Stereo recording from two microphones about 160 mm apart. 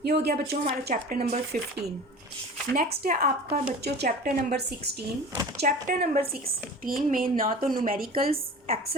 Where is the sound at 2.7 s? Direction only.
75° right (ahead or behind).